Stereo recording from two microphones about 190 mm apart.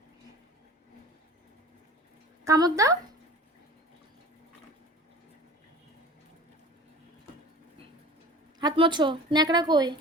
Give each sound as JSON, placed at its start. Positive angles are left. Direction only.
{"t": 2.4, "sound": "speech", "side_deg": -20}
{"t": 8.5, "sound": "a woman's voice", "side_deg": -25}